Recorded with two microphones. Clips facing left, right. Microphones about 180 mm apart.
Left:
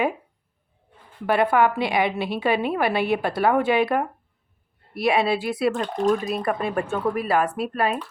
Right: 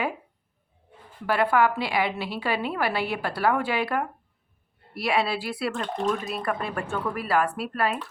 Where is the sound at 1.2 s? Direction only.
20° left (ahead or behind).